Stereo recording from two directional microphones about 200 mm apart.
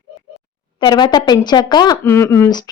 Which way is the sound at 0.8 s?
20° left (ahead or behind).